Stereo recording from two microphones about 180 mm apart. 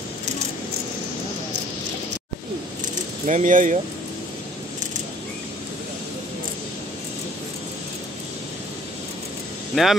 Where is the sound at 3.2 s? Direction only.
45° right (ahead or behind).